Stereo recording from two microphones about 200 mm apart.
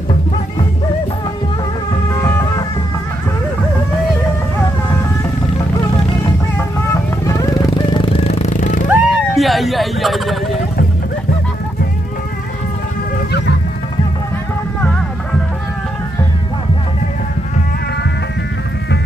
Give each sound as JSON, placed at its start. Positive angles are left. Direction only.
{"t": 2.2, "sound": "music", "side_deg": 15}
{"t": 6.9, "sound": "vehicle", "side_deg": 15}
{"t": 7.9, "sound": "a sound", "side_deg": 25}
{"t": 8.9, "sound": "vehicle", "side_deg": 0}